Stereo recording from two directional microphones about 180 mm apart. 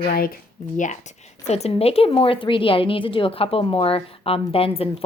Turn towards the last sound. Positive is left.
turn(degrees=30)  # may be behind; listen again after turning